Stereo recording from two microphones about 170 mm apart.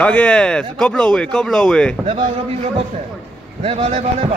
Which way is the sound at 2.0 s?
35° right (ahead or behind).